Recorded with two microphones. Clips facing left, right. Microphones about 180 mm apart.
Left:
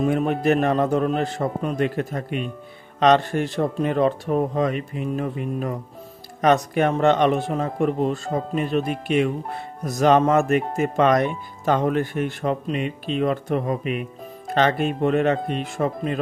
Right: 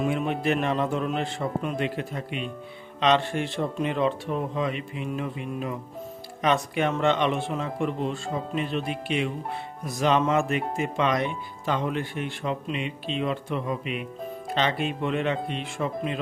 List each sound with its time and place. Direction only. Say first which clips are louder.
0.0 s speech: left 5 dB; 45° left (ahead or behind)